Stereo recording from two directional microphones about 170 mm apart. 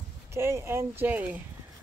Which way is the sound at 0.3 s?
15° right (ahead or behind).